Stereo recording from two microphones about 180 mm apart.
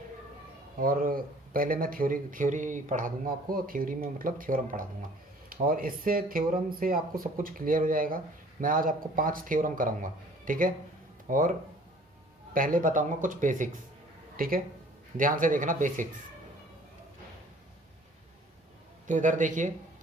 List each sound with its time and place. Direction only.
0.8 s speech: 50° right (ahead or behind)
12.5 s speech: 50° right (ahead or behind)
19.0 s speech: 45° right (ahead or behind)